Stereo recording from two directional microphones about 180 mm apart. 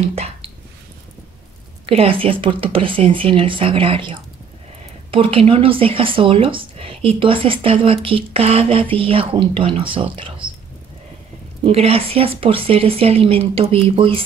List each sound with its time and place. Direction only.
0.1 s whispering: 35° right (ahead or behind)
1.9 s speech: 30° right (ahead or behind)
11.6 s speech: 35° right (ahead or behind)